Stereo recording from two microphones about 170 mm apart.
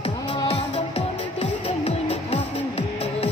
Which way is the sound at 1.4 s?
40° left (ahead or behind).